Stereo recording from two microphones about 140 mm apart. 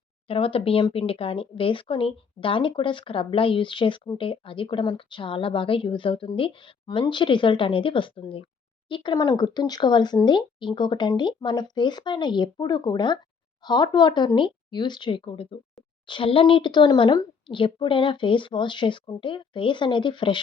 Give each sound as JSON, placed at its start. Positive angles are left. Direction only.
{"t": 0.3, "sound": "speech", "side_deg": 40}